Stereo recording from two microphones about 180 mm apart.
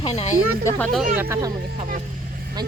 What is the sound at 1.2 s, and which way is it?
Speech, 15° right (ahead or behind).